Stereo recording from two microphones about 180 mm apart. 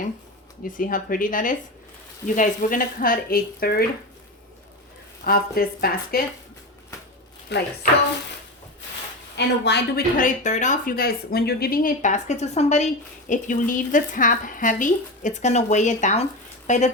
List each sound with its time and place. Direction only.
0.6 s speech: 50° left (ahead or behind)
5.2 s speech: 55° left (ahead or behind)
7.5 s a woman's voice: 70° left (ahead or behind)
9.3 s a woman's voice: 70° left (ahead or behind)
10.2 s speech: 45° left (ahead or behind)